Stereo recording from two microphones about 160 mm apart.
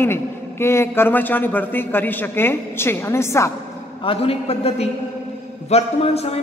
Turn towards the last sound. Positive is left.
turn(degrees=40)  # may be behind; listen again after turning